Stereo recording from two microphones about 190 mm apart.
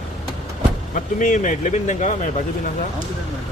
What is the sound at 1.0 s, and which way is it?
Speech, 45° left (ahead or behind).